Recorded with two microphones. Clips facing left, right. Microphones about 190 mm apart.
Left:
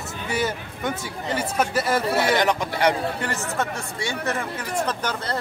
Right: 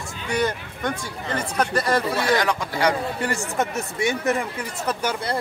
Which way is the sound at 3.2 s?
10° right (ahead or behind).